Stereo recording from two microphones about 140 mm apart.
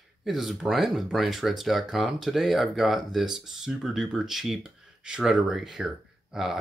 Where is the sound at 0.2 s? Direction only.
Centre (ahead or behind).